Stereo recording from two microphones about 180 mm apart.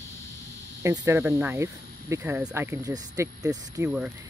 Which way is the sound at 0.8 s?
15° right (ahead or behind).